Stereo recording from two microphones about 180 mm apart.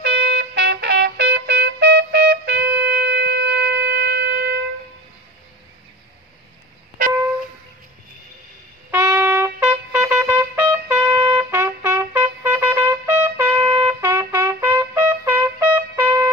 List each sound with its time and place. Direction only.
0.0 s trumpet: 65° right (ahead or behind)
3.1 s shofar: 75° right (ahead or behind)
8.9 s trumpet: 15° right (ahead or behind)